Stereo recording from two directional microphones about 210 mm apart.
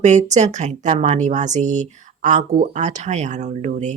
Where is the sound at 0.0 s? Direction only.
35° right (ahead or behind).